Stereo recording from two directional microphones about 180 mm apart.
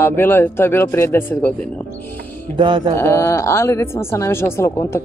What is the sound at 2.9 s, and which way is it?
Speech, 15° left (ahead or behind).